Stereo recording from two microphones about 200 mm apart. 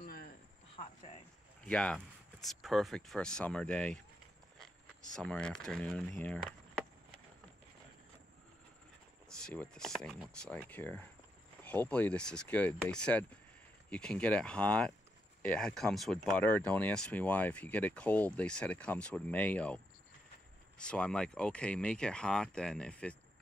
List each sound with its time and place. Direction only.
0.0 s cricket: 45° left (ahead or behind)
1.7 s speech: 5° left (ahead or behind)
9.4 s speech: 5° left (ahead or behind)